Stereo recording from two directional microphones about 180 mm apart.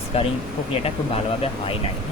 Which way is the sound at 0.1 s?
35° left (ahead or behind).